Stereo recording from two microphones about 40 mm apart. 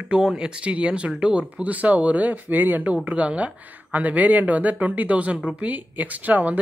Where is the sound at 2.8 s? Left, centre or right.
Right.